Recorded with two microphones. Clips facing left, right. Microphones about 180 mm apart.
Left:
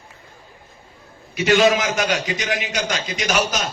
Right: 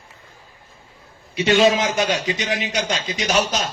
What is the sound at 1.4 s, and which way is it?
A man's voice, 30° right (ahead or behind).